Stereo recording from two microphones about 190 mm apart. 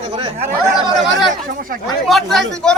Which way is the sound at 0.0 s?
35° right (ahead or behind).